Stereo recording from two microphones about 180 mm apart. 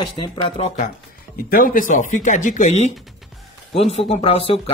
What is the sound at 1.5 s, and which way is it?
Speech, 50° left (ahead or behind).